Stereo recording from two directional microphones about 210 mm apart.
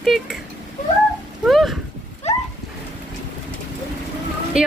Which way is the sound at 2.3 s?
30° left (ahead or behind).